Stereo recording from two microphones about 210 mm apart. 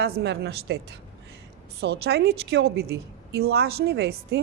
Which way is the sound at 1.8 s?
50° right (ahead or behind).